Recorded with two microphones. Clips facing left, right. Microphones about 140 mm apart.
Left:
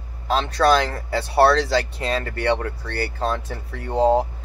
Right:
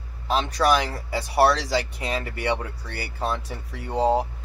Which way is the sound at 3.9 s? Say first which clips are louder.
Left 4 dB; 20° left (ahead or behind).